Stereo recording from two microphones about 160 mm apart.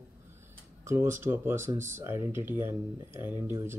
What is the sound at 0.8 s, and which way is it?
Speech, 15° right (ahead or behind).